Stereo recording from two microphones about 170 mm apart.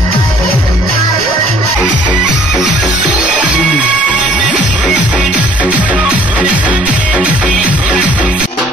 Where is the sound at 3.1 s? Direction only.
10° right (ahead or behind).